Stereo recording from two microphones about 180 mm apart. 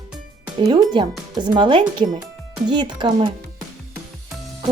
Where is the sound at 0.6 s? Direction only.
25° right (ahead or behind).